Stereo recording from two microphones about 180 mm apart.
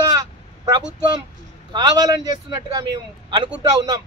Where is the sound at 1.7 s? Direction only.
25° right (ahead or behind).